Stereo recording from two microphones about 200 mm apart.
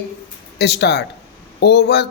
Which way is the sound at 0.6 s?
55° left (ahead or behind).